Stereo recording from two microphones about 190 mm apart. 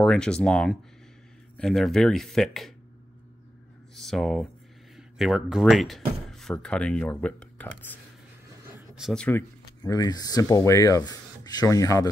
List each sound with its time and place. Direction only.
0.0 s speech: 5° left (ahead or behind)
3.9 s speech: centre (ahead or behind)
8.7 s a sound: 5° right (ahead or behind)
9.8 s speech: 20° left (ahead or behind)